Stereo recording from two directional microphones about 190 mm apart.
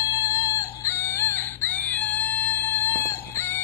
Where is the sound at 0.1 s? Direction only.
15° left (ahead or behind).